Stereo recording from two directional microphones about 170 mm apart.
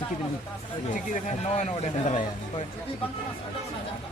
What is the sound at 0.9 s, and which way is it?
Speech, 50° left (ahead or behind).